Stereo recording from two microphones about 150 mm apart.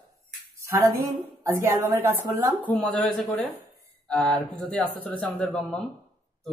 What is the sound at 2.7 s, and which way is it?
A man's voice, 5° left (ahead or behind).